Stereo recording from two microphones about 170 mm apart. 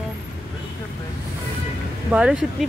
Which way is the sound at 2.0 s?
5° right (ahead or behind).